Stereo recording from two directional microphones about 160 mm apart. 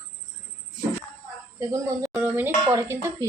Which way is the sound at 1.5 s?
20° right (ahead or behind).